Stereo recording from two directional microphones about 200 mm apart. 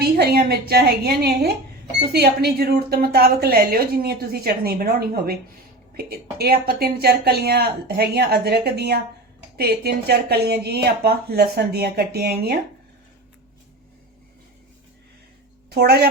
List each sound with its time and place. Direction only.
0.0 s a woman's voice: 50° right (ahead or behind)
15.7 s speech: 55° right (ahead or behind)